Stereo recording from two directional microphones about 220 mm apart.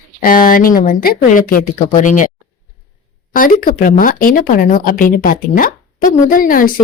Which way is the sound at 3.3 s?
40° left (ahead or behind).